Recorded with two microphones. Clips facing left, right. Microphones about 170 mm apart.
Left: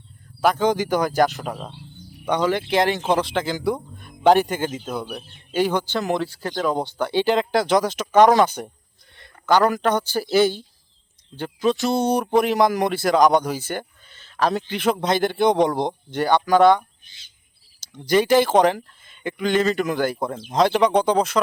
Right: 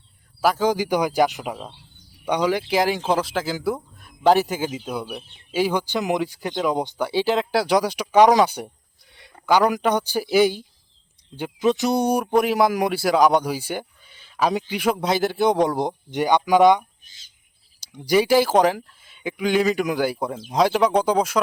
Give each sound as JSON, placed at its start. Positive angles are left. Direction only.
{"t": 0.4, "sound": "speech", "side_deg": -10}
{"t": 7.1, "sound": "speech", "side_deg": -5}
{"t": 17.0, "sound": "bird", "side_deg": -45}
{"t": 17.7, "sound": "speech", "side_deg": -10}